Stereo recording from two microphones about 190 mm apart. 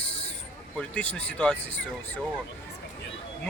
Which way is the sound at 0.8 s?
5° left (ahead or behind).